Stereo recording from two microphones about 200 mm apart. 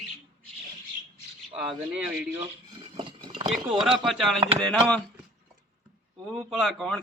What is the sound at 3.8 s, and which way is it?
Speech, centre (ahead or behind).